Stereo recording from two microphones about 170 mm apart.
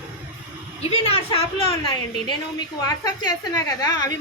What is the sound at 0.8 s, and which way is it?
Speech, 35° left (ahead or behind).